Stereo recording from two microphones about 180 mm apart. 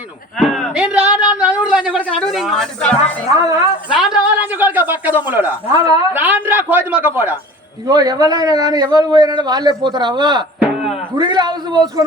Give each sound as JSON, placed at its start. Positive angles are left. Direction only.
{"t": 0.3, "sound": "a sound", "side_deg": 0}
{"t": 2.0, "sound": "a woman's voice", "side_deg": 0}
{"t": 3.3, "sound": "a man's voice", "side_deg": -20}
{"t": 3.8, "sound": "a sound", "side_deg": -5}
{"t": 6.1, "sound": "a man's voice", "side_deg": -10}
{"t": 7.9, "sound": "a man's voice", "side_deg": -20}
{"t": 10.6, "sound": "music", "side_deg": 0}
{"t": 11.1, "sound": "a man's voice", "side_deg": -25}